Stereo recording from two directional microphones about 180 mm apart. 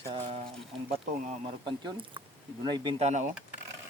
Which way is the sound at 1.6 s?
25° right (ahead or behind).